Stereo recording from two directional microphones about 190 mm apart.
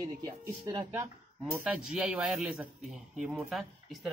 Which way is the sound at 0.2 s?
15° right (ahead or behind).